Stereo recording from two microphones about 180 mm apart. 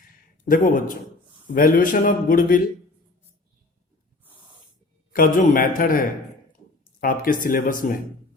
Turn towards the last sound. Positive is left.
turn(degrees=50)  # may be behind; listen again after turning